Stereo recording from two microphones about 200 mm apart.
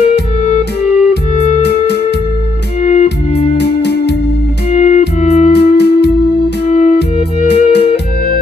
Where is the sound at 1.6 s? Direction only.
55° left (ahead or behind).